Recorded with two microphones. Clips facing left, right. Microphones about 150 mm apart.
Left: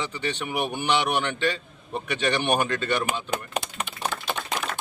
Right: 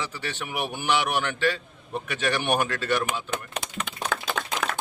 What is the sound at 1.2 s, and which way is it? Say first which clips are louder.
A man's voice: even; 20° left (ahead or behind).